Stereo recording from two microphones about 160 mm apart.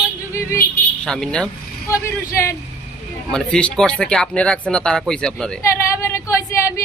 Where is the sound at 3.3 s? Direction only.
5° left (ahead or behind).